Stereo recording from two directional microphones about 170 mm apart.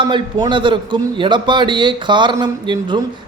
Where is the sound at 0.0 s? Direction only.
30° right (ahead or behind).